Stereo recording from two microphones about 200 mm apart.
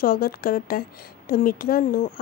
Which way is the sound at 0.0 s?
45° left (ahead or behind).